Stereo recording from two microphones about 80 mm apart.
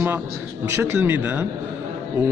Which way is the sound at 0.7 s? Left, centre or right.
Right.